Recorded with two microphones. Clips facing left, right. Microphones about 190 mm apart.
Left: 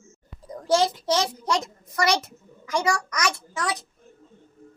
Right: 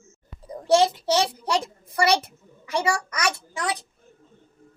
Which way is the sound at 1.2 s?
30° right (ahead or behind).